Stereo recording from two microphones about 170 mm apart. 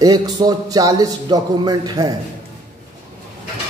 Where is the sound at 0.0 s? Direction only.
25° right (ahead or behind).